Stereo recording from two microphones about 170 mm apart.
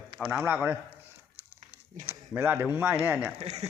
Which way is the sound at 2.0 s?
10° right (ahead or behind).